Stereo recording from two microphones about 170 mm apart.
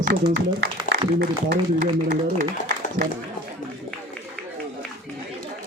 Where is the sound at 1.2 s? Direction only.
65° right (ahead or behind).